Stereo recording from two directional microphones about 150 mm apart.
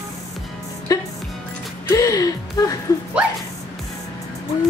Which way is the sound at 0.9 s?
25° left (ahead or behind).